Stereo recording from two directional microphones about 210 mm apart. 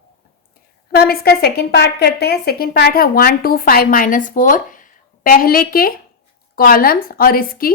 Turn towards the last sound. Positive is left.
turn(degrees=45)  # may be behind; listen again after turning